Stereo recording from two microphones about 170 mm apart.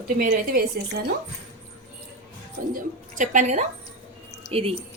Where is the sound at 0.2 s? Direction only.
55° right (ahead or behind).